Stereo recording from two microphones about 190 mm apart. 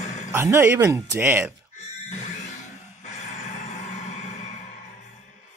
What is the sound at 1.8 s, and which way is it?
Music, 35° left (ahead or behind).